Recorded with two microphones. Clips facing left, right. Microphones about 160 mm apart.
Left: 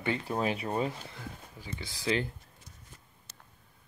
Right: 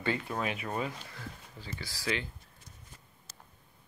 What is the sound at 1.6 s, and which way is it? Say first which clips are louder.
Speech: left 1 dB; 20° left (ahead or behind).